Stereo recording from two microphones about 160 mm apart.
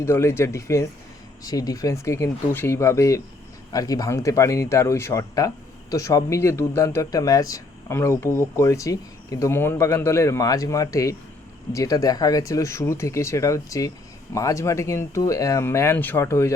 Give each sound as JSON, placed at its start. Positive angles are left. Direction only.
{"t": 0.0, "sound": "a man's voice", "side_deg": 15}